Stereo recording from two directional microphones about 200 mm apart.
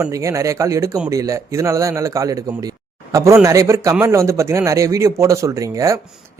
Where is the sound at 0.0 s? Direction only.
15° right (ahead or behind).